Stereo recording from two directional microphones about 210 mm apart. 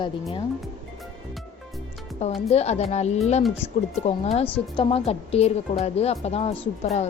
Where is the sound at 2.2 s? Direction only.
30° left (ahead or behind).